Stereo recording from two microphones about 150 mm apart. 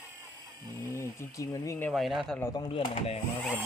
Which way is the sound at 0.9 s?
20° left (ahead or behind).